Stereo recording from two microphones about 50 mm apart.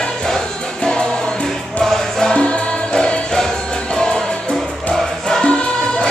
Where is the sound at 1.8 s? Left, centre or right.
Centre.